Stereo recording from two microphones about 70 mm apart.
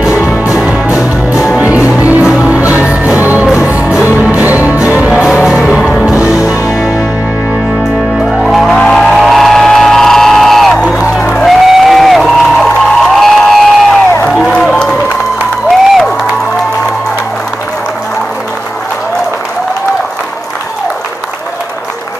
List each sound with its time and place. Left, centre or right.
0.1 s music: left
0.4 s music: right
8.3 s music: centre
11.4 s a sound: centre
14.7 s music: centre
15.9 s music: centre